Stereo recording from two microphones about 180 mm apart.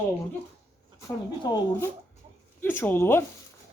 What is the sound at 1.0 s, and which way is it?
Speech, 15° left (ahead or behind).